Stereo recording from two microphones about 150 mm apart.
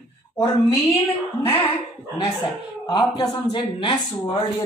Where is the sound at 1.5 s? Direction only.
40° left (ahead or behind).